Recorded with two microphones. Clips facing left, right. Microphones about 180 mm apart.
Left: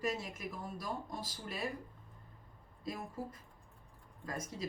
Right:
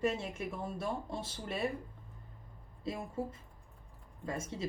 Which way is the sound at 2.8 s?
25° right (ahead or behind).